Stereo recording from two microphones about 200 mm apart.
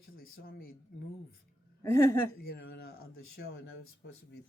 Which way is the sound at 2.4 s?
50° left (ahead or behind).